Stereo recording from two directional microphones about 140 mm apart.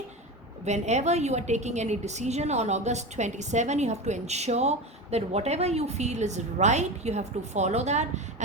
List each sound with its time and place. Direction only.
0.6 s a woman's voice: 55° right (ahead or behind)